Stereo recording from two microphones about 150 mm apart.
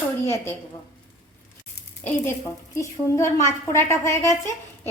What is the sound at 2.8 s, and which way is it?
A woman's voice, 20° left (ahead or behind).